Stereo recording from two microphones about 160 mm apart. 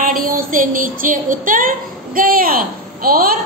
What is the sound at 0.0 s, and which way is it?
Child singing, 60° right (ahead or behind).